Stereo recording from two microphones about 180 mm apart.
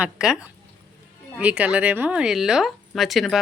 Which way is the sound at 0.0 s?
5° right (ahead or behind).